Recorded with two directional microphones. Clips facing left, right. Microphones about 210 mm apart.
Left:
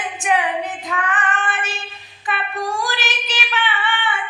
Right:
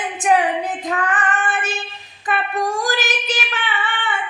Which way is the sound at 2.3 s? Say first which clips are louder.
Right 3 dB; 45° right (ahead or behind).